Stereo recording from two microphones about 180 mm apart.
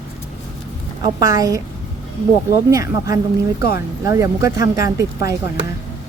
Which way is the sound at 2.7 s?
20° right (ahead or behind).